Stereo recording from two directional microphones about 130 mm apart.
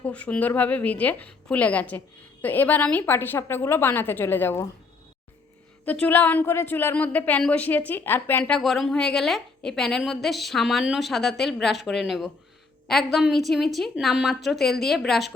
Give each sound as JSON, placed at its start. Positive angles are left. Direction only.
{"t": 0.0, "sound": "a woman's voice", "side_deg": 10}
{"t": 5.8, "sound": "a woman's voice", "side_deg": 10}